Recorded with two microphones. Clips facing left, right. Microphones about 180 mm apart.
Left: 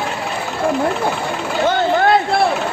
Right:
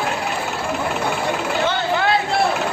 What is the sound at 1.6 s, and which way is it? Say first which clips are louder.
Vehicle: left 8 dB; 45° left (ahead or behind).